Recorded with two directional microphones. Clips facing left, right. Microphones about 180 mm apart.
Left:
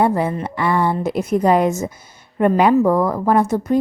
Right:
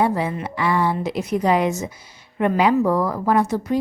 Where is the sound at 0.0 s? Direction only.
50° left (ahead or behind).